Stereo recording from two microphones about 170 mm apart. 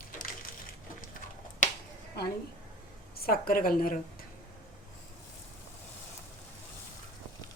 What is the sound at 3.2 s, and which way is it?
Speech, 55° left (ahead or behind).